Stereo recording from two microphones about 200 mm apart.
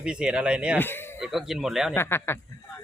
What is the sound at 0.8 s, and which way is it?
Speech, 10° left (ahead or behind).